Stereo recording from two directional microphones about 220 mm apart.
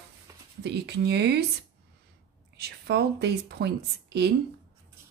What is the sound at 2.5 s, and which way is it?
Speech, 50° right (ahead or behind).